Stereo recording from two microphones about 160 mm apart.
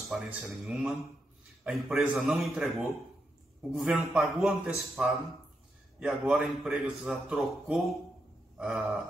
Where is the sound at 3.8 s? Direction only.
5° right (ahead or behind).